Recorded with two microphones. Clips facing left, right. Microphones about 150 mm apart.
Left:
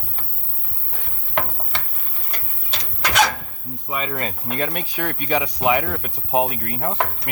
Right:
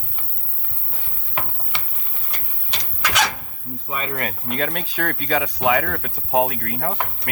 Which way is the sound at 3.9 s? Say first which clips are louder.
Left 1 dB; 10° left (ahead or behind).